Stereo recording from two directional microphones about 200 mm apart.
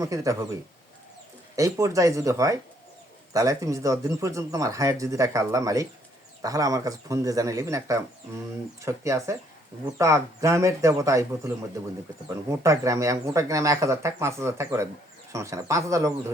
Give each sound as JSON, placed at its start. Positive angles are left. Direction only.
{"t": 0.0, "sound": "speech", "side_deg": -15}
{"t": 1.5, "sound": "speech", "side_deg": -15}